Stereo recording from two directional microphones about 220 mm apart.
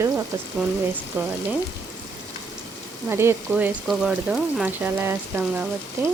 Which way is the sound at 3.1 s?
10° right (ahead or behind).